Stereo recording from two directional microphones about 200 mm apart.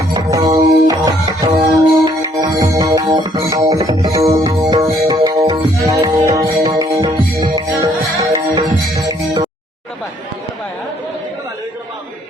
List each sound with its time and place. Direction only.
0.0 s music: 20° right (ahead or behind)